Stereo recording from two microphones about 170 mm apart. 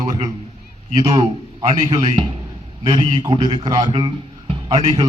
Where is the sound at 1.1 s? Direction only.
20° right (ahead or behind).